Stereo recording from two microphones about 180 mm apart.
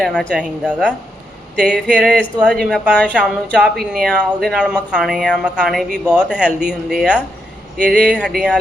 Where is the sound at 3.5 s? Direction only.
5° right (ahead or behind).